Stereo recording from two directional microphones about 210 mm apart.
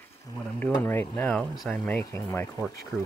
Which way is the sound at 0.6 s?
5° left (ahead or behind).